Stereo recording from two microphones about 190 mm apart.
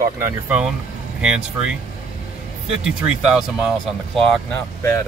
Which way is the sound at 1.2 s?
5° right (ahead or behind).